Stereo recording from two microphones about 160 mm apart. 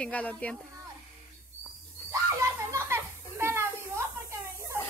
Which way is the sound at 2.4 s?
20° right (ahead or behind).